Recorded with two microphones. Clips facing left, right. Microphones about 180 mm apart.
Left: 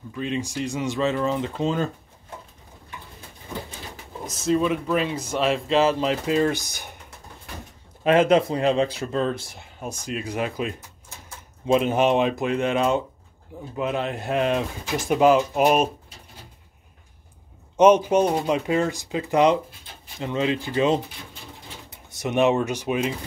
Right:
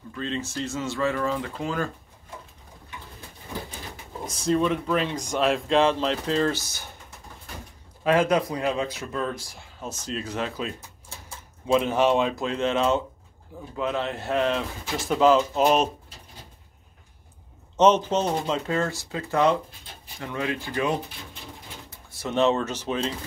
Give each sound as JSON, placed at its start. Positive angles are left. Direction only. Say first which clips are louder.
{"t": 0.1, "sound": "speech", "louder": "left 3 dB", "side_deg": 15}
{"t": 4.3, "sound": "speech", "louder": "left 1 dB", "side_deg": 5}
{"t": 8.0, "sound": "speech", "louder": "left 4 dB", "side_deg": 20}
{"t": 17.7, "sound": "speech", "louder": "left 4 dB", "side_deg": 10}